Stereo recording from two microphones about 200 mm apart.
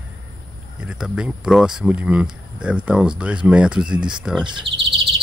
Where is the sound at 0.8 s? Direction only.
5° right (ahead or behind).